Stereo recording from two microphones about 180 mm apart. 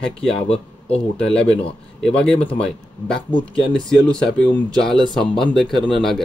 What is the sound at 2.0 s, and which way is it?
Speech, 5° left (ahead or behind).